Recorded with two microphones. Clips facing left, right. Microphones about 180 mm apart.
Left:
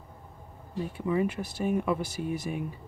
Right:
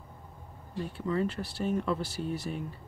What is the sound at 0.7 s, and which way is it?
Speech, 10° left (ahead or behind).